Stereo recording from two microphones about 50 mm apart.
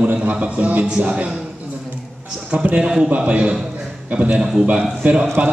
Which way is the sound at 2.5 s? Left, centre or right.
Right.